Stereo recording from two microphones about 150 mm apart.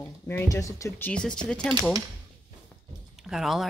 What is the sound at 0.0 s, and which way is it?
A child's voice, 15° left (ahead or behind).